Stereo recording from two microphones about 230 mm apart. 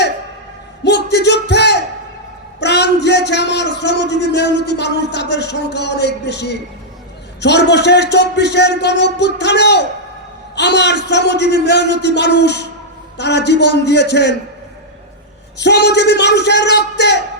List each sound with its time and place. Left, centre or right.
0.9 s a sound: left
2.6 s a man's voice: left
15.5 s speech: left